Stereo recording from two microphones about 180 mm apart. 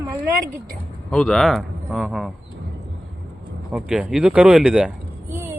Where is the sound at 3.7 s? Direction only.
5° right (ahead or behind).